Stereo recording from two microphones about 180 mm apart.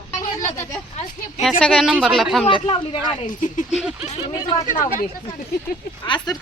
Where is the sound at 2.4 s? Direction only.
30° left (ahead or behind).